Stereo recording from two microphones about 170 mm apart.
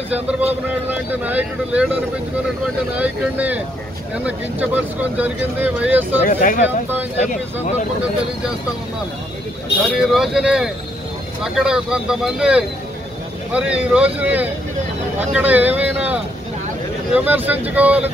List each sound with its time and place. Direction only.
0.1 s speech: 10° right (ahead or behind)
6.2 s speech: 55° left (ahead or behind)
9.9 s speech: centre (ahead or behind)